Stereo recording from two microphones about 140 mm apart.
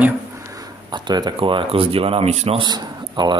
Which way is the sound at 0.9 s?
30° right (ahead or behind).